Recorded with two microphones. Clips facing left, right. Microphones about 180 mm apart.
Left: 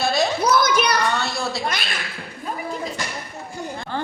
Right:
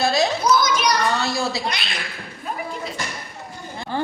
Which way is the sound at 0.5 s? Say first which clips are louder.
Even; 60° left (ahead or behind).